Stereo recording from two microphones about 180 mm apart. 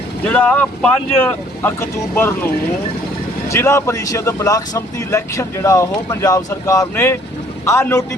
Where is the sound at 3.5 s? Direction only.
15° left (ahead or behind).